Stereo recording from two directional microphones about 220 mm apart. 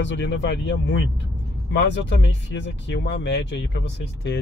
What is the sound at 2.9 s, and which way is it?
Speech, 50° left (ahead or behind).